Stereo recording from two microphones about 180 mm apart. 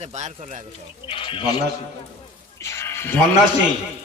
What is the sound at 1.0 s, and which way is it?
Speech, 30° left (ahead or behind).